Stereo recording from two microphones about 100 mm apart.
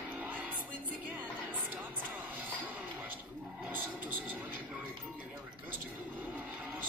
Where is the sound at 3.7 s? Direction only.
20° right (ahead or behind).